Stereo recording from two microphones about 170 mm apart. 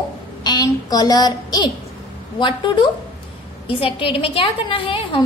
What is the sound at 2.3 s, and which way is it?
A woman's voice, 25° left (ahead or behind).